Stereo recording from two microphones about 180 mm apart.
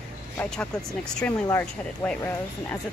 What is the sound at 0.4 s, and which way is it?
A woman's voice, 5° left (ahead or behind).